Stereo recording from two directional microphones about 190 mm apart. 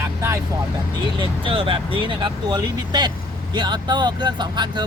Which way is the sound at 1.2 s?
30° right (ahead or behind).